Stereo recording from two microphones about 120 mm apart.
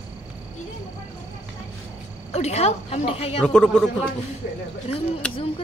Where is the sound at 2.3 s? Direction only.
65° left (ahead or behind).